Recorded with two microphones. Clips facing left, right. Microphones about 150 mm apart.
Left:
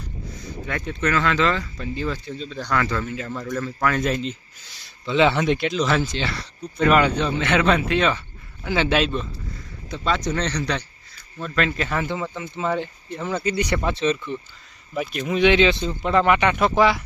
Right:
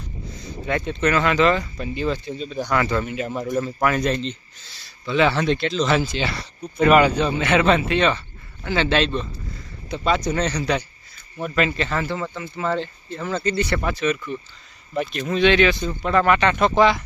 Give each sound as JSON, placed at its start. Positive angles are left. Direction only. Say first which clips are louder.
{"t": 0.3, "sound": "speech", "louder": "right 5 dB", "side_deg": -25}
{"t": 4.0, "sound": "speech", "louder": "right 1 dB", "side_deg": 5}
{"t": 5.9, "sound": "speech", "louder": "right 2 dB", "side_deg": -10}
{"t": 9.9, "sound": "speech", "louder": "right 2 dB", "side_deg": -15}
{"t": 11.8, "sound": "speech", "louder": "right 1 dB", "side_deg": 10}
{"t": 13.9, "sound": "speech", "louder": "left 1 dB", "side_deg": 30}
{"t": 14.9, "sound": "speech", "louder": "right 1 dB", "side_deg": 5}